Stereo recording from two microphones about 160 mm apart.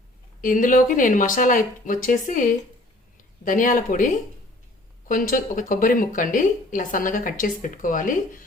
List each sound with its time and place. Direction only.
0.4 s speech: 55° left (ahead or behind)